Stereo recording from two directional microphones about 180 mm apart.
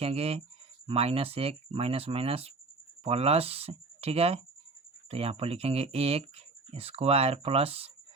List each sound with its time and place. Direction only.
0.0 s speech: 35° right (ahead or behind)